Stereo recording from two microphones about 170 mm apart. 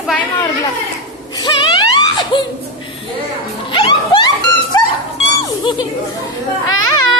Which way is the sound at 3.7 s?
30° left (ahead or behind).